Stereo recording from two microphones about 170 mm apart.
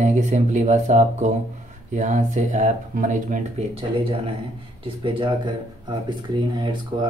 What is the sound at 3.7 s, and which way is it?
Speech, 35° right (ahead or behind).